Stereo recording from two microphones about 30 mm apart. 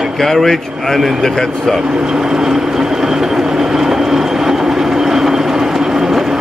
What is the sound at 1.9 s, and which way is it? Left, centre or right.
Train, right.